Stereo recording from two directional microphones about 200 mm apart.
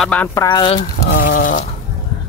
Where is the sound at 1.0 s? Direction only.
45° left (ahead or behind).